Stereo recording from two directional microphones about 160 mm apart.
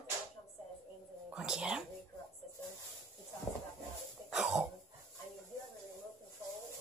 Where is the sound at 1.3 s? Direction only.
5° right (ahead or behind).